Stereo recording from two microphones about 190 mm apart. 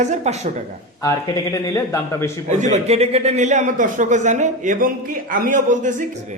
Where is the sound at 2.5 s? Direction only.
40° right (ahead or behind).